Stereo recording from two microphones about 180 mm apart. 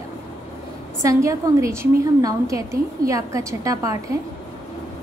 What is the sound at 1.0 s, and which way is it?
A woman's voice, 15° right (ahead or behind).